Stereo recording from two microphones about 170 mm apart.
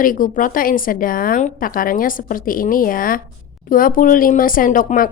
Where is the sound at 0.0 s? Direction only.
55° left (ahead or behind).